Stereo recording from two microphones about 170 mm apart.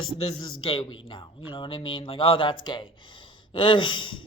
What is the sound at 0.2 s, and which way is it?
Speech, 30° left (ahead or behind).